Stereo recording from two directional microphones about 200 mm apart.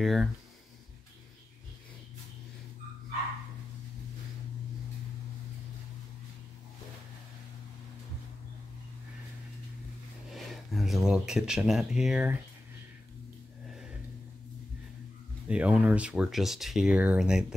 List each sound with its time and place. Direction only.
0.0 s speech: centre (ahead or behind)
10.3 s speech: centre (ahead or behind)
15.4 s speech: 5° right (ahead or behind)